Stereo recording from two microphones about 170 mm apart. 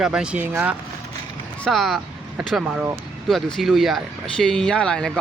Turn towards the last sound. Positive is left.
turn(degrees=5)  # may be behind; listen again after turning